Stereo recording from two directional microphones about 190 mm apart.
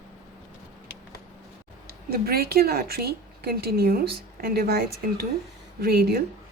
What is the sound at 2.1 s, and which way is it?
A woman's voice, 55° right (ahead or behind).